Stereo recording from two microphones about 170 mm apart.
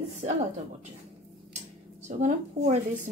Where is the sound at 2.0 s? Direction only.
45° right (ahead or behind).